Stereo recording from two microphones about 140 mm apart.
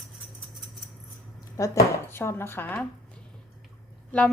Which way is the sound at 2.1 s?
15° left (ahead or behind).